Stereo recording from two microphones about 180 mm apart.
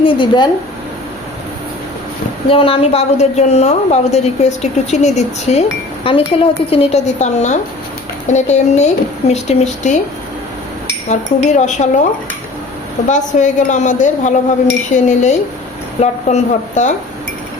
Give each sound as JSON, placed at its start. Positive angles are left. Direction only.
{"t": 0.0, "sound": "speech", "side_deg": 25}
{"t": 2.5, "sound": "a woman's voice", "side_deg": 30}
{"t": 11.1, "sound": "a woman's voice", "side_deg": 40}
{"t": 13.1, "sound": "a woman's voice", "side_deg": 40}